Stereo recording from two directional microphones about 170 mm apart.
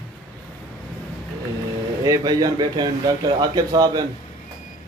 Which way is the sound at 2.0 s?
20° right (ahead or behind).